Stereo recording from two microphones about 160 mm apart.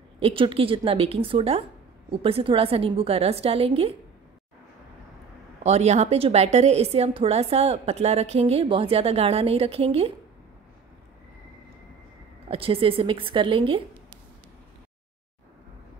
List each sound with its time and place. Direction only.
0.2 s a woman's voice: 35° right (ahead or behind)
5.6 s a woman's voice: 45° right (ahead or behind)
12.4 s a woman's voice: 35° right (ahead or behind)